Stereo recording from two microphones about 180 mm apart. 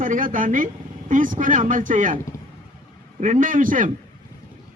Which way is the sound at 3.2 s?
45° right (ahead or behind).